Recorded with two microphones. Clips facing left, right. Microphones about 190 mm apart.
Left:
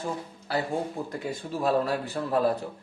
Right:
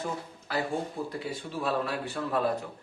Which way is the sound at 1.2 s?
45° left (ahead or behind).